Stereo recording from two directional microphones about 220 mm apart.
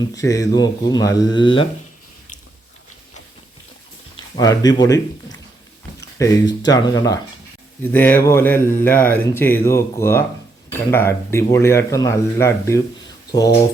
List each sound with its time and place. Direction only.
0.1 s speech: 15° left (ahead or behind)
4.4 s speech: 15° left (ahead or behind)